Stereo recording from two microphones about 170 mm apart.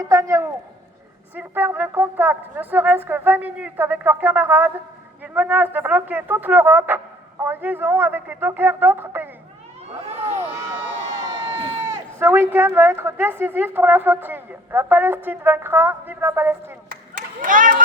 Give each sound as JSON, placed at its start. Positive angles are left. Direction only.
{"t": 0.0, "sound": "a man's voice", "side_deg": -20}
{"t": 11.2, "sound": "crowd", "side_deg": -25}
{"t": 11.5, "sound": "run", "side_deg": -35}
{"t": 12.2, "sound": "a woman's voice", "side_deg": -15}
{"t": 17.2, "sound": "speech", "side_deg": -50}